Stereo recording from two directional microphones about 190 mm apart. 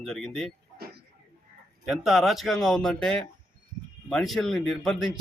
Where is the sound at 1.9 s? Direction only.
Centre (ahead or behind).